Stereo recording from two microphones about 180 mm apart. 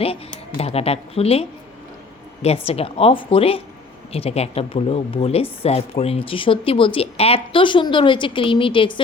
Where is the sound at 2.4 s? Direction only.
35° left (ahead or behind).